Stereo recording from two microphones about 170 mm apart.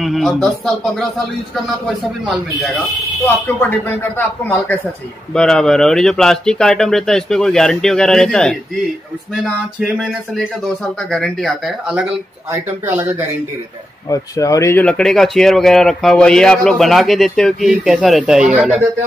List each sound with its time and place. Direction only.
0.0 s speech: centre (ahead or behind)
2.2 s speech: centre (ahead or behind)
3.4 s speech: 15° left (ahead or behind); by 13.1 s 10° right (ahead or behind)
14.0 s speech: 20° left (ahead or behind)
14.9 s speech: 5° left (ahead or behind)